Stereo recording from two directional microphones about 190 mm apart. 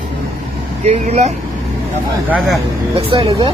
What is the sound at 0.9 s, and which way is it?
Speech, 35° right (ahead or behind).